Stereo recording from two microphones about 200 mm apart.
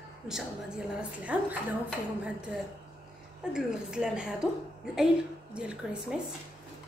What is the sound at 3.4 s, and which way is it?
Speech, 5° right (ahead or behind).